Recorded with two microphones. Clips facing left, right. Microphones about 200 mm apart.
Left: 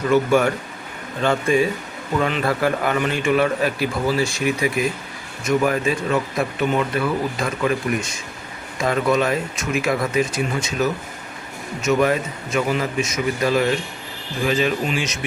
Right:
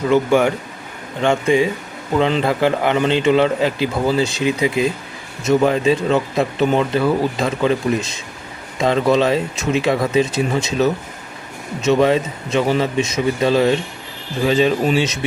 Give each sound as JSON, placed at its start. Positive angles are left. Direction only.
{"t": 0.1, "sound": "a man's voice", "side_deg": -15}
{"t": 11.9, "sound": "a man's voice", "side_deg": -25}